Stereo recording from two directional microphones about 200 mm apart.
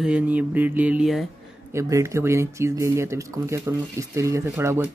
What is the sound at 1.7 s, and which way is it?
Speech, 15° right (ahead or behind).